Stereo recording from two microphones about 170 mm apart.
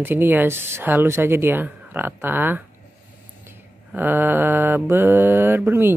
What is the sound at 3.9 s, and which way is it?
Speech, 10° right (ahead or behind).